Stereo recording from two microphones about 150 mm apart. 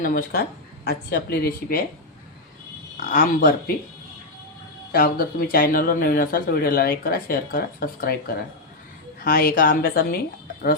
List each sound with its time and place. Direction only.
0.0 s speech: 80° left
3.1 s speech: 70° left (ahead or behind)
4.9 s speech: 90° left
9.2 s a woman's voice: 85° left